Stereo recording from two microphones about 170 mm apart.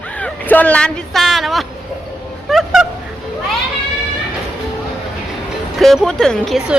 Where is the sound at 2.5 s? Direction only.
Centre (ahead or behind).